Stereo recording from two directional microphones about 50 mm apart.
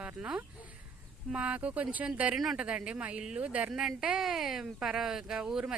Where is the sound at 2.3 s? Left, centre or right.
Centre.